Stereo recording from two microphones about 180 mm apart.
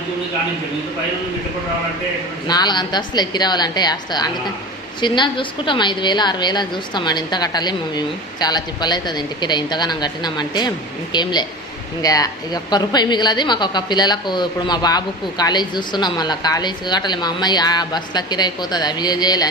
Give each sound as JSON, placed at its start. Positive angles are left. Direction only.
{"t": 2.5, "sound": "a woman's voice", "side_deg": 25}